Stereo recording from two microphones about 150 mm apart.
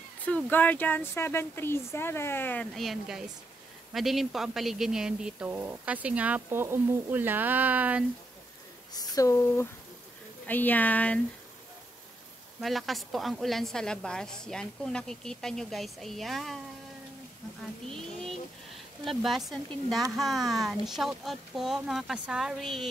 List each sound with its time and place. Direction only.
0.5 s speech: 10° left (ahead or behind); by 8.0 s 10° right (ahead or behind)
8.9 s speech: 25° left (ahead or behind)
12.5 s a woman's voice: centre (ahead or behind)
17.8 s a sound: 5° left (ahead or behind)
19.0 s a woman's voice: centre (ahead or behind)